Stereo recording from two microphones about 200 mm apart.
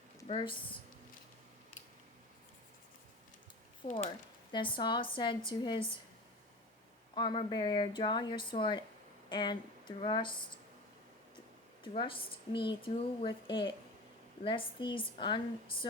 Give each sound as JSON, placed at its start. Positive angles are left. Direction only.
{"t": 0.3, "sound": "speech", "side_deg": 30}
{"t": 3.8, "sound": "speech", "side_deg": 25}
{"t": 7.2, "sound": "speech", "side_deg": 25}
{"t": 11.8, "sound": "speech", "side_deg": 25}